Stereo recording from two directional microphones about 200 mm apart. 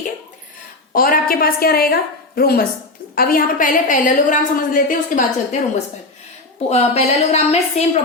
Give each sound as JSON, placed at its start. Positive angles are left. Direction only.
{"t": 0.9, "sound": "a woman's voice", "side_deg": 45}
{"t": 6.7, "sound": "a woman's voice", "side_deg": 30}